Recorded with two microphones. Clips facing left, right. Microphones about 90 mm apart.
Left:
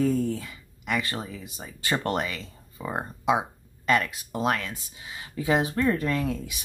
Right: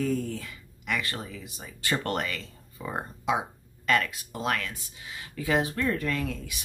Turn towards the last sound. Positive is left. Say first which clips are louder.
# left 3 dB
turn(degrees=25)  # may be behind; listen again after turning